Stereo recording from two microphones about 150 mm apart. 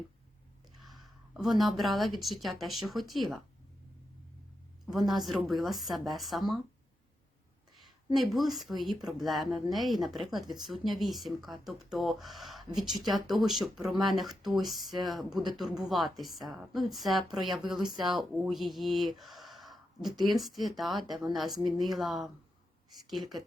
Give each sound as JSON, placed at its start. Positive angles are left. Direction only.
{"t": 0.8, "sound": "a woman's voice", "side_deg": 0}
{"t": 5.5, "sound": "speech", "side_deg": 0}
{"t": 7.8, "sound": "a woman's voice", "side_deg": 0}
{"t": 17.9, "sound": "speech", "side_deg": -30}
{"t": 18.2, "sound": "speech", "side_deg": 0}